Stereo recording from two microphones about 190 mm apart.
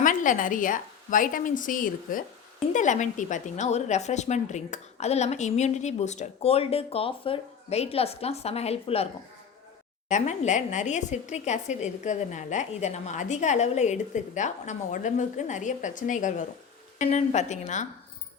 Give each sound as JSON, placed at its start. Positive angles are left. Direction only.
{"t": 0.0, "sound": "a woman's voice", "side_deg": 45}
{"t": 10.1, "sound": "a woman's voice", "side_deg": 40}